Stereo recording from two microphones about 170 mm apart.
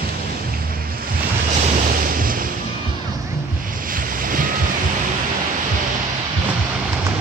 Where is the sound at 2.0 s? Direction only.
55° right (ahead or behind).